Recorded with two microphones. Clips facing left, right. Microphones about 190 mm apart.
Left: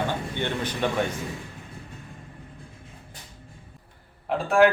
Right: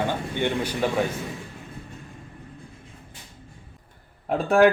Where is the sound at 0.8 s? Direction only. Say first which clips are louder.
Right 1 dB; 10° right (ahead or behind).